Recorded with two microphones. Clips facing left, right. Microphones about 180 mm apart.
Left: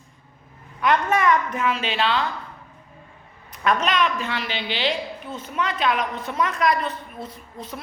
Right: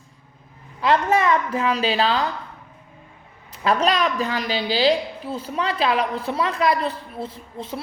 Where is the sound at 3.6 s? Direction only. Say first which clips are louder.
Right 2 dB; 35° right (ahead or behind).